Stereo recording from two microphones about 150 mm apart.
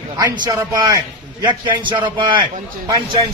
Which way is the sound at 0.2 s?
25° right (ahead or behind).